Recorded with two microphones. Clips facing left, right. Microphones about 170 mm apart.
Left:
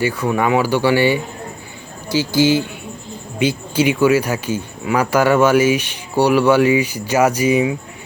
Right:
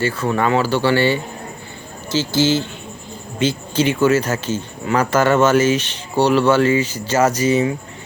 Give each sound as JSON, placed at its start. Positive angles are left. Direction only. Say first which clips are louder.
{"t": 0.0, "sound": "speech", "louder": "left 1 dB", "side_deg": 15}